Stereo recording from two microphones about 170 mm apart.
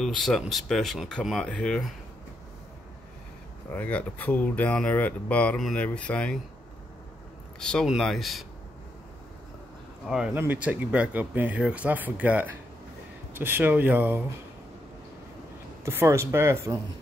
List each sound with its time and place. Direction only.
0.0 s speech: centre (ahead or behind)
3.7 s speech: 10° left (ahead or behind)
7.6 s speech: centre (ahead or behind)
10.0 s speech: 5° right (ahead or behind)
15.8 s speech: 15° right (ahead or behind)